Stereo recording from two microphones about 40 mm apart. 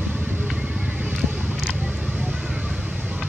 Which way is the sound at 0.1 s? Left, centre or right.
Right.